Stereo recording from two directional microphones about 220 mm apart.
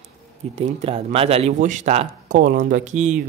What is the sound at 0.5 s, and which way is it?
Speech, 30° right (ahead or behind).